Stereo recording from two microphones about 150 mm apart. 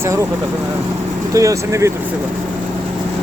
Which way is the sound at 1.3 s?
20° right (ahead or behind).